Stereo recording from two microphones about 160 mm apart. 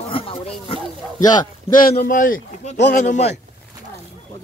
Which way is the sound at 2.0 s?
60° left (ahead or behind).